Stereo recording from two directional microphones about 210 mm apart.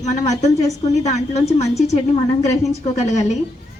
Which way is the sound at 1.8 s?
30° left (ahead or behind).